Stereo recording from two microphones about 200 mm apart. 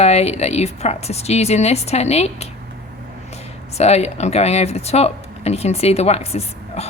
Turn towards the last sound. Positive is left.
turn(degrees=30)  # may be behind; listen again after turning